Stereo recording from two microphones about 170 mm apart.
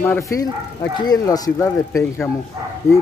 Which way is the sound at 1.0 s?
20° left (ahead or behind).